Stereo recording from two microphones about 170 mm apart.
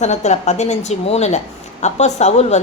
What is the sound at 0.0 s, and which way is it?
A woman's voice, 40° left (ahead or behind).